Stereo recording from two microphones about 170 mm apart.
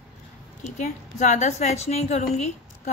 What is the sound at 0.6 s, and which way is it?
A woman's voice, 45° left (ahead or behind).